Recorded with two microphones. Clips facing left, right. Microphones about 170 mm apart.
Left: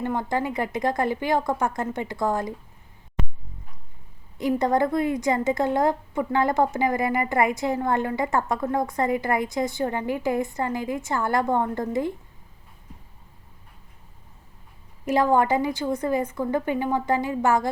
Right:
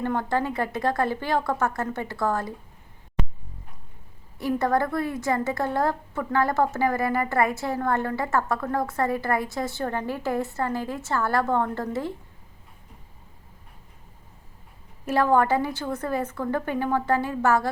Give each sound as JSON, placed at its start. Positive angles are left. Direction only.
{"t": 0.0, "sound": "a woman's voice", "side_deg": 15}
{"t": 4.4, "sound": "a woman's voice", "side_deg": 15}
{"t": 15.0, "sound": "a woman's voice", "side_deg": 15}